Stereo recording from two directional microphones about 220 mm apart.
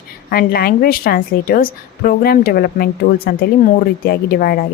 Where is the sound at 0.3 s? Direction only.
45° left (ahead or behind).